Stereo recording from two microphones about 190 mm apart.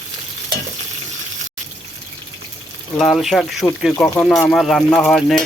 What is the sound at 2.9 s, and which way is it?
Speech, centre (ahead or behind).